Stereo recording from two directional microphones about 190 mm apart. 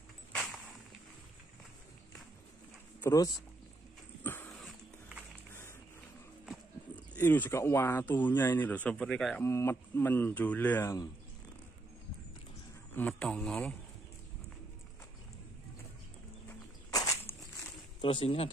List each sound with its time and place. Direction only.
3.0 s speech: 15° left (ahead or behind)
4.2 s dog: 10° left (ahead or behind)
7.2 s speech: 10° left (ahead or behind)
12.9 s speech: 5° left (ahead or behind)
16.4 s a sound: 15° left (ahead or behind)
18.0 s speech: 30° left (ahead or behind)